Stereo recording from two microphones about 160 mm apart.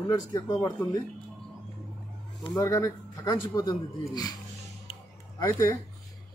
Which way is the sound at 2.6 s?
20° left (ahead or behind).